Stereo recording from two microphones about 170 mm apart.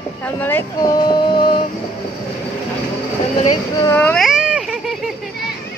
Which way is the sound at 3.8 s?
10° left (ahead or behind).